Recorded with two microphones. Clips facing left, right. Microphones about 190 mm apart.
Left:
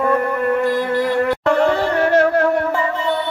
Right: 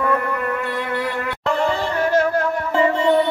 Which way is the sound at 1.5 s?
65° left (ahead or behind).